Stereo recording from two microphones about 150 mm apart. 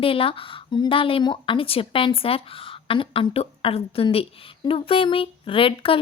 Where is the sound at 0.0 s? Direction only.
35° left (ahead or behind).